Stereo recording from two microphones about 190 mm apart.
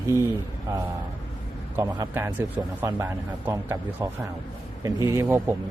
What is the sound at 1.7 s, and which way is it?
A man's voice, 15° right (ahead or behind).